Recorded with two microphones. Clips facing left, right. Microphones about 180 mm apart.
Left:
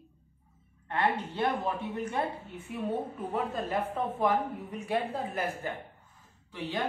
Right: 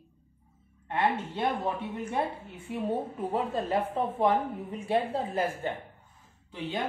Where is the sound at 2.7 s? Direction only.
30° right (ahead or behind).